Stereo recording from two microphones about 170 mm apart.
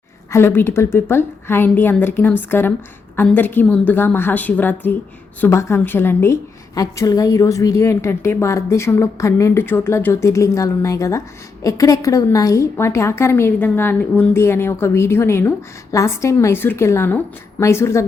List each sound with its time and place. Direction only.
0.3 s a woman's voice: 15° left (ahead or behind)